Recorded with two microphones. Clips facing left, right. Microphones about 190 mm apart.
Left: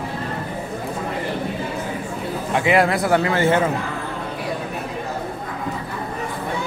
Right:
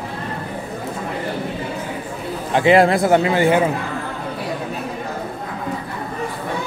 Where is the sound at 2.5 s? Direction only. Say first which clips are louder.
Right 5 dB; 30° right (ahead or behind).